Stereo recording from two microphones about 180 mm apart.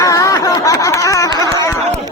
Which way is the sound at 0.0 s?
20° left (ahead or behind).